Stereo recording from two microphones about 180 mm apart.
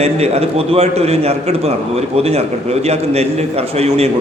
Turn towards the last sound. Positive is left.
turn(degrees=-35)  # may be behind; listen again after turning